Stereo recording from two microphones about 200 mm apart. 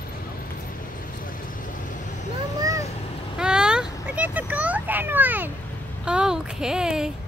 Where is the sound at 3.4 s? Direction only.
5° right (ahead or behind).